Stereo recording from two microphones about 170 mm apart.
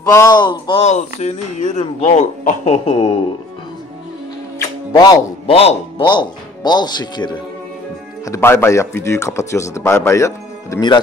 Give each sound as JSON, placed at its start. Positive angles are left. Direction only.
{"t": 0.1, "sound": "speech", "side_deg": 20}
{"t": 0.8, "sound": "speech", "side_deg": 45}
{"t": 4.6, "sound": "music", "side_deg": 20}
{"t": 5.5, "sound": "speech", "side_deg": 35}
{"t": 8.3, "sound": "speech", "side_deg": 15}